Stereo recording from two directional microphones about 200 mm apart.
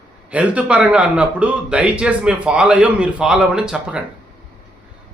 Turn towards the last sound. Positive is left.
turn(degrees=-5)  # may be behind; listen again after turning